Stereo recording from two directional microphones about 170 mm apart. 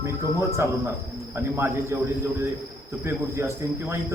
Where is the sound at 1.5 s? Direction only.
15° right (ahead or behind).